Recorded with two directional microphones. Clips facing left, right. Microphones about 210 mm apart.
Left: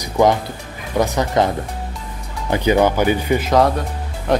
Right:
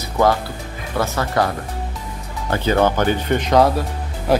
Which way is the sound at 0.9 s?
15° left (ahead or behind).